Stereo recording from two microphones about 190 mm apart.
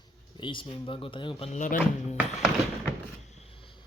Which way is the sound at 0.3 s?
25° left (ahead or behind).